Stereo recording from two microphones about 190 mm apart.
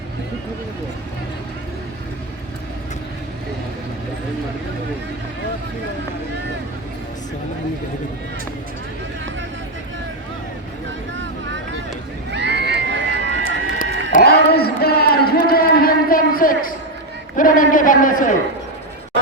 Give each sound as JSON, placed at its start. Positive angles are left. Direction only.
{"t": 12.3, "sound": "run", "side_deg": -65}
{"t": 14.1, "sound": "a sound", "side_deg": 55}
{"t": 17.3, "sound": "a man's voice", "side_deg": 45}